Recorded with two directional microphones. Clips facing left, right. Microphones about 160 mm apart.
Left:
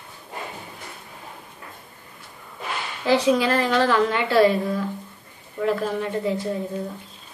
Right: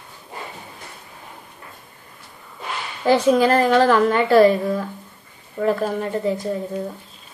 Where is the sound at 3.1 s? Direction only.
45° right (ahead or behind).